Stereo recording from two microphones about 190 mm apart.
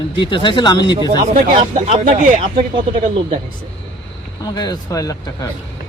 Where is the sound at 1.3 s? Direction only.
40° right (ahead or behind).